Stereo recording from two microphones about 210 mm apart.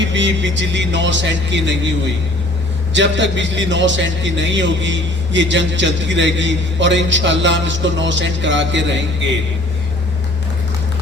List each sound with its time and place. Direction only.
0.0 s a man's voice: 60° right (ahead or behind)
2.9 s a man's voice: 60° right (ahead or behind)